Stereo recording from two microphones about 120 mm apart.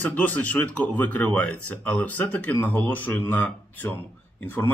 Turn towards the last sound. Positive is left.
turn(degrees=15)  # may be behind; listen again after turning